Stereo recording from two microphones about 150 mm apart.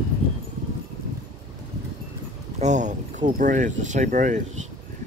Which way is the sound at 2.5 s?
50° right (ahead or behind).